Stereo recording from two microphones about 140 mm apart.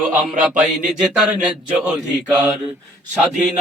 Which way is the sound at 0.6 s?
5° right (ahead or behind).